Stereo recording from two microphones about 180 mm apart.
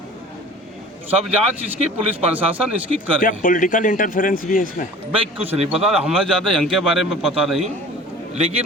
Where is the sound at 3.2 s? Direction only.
50° left (ahead or behind).